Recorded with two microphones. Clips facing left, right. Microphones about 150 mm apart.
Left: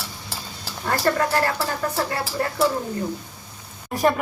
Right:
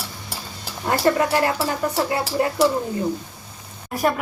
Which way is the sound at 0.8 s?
15° right (ahead or behind).